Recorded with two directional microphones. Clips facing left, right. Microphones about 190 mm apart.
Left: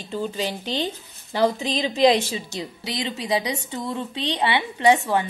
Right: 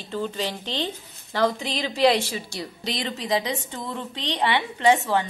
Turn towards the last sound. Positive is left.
turn(degrees=15)  # may be behind; listen again after turning